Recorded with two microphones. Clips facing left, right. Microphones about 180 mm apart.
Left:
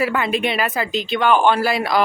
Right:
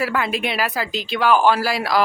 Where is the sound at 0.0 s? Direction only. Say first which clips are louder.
Left 2 dB; centre (ahead or behind).